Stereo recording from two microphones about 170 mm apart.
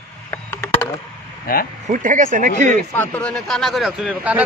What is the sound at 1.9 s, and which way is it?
Speech, 50° right (ahead or behind).